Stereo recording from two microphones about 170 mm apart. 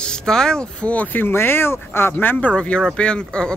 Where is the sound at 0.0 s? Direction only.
5° left (ahead or behind).